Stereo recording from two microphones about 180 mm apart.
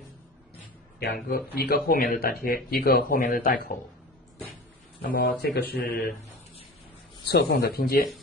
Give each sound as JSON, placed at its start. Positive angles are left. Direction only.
{"t": 0.9, "sound": "speech", "side_deg": 55}
{"t": 5.1, "sound": "speech", "side_deg": 60}
{"t": 7.2, "sound": "speech", "side_deg": 60}